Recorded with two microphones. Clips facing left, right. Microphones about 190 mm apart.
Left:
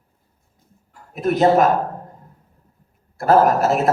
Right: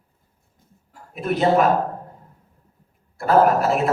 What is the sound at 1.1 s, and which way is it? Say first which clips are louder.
Speech: left 3 dB; 40° left (ahead or behind).